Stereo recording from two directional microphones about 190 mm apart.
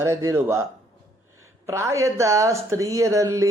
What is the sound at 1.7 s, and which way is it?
Speech, 15° right (ahead or behind).